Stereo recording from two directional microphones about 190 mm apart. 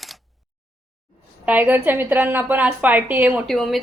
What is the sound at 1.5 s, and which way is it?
A woman's voice, 10° right (ahead or behind).